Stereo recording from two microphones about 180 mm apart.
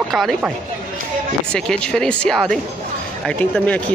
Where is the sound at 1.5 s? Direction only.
5° left (ahead or behind).